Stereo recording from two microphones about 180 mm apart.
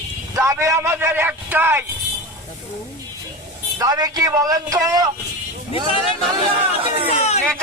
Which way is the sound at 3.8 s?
20° right (ahead or behind).